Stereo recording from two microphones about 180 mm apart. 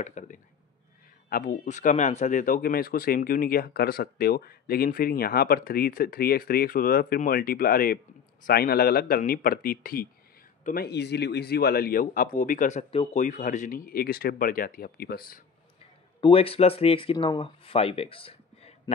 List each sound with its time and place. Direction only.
0.0 s speech: 40° left (ahead or behind)
16.2 s speech: 30° left (ahead or behind)